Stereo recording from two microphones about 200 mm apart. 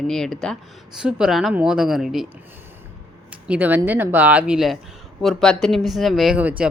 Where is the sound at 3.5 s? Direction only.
10° right (ahead or behind).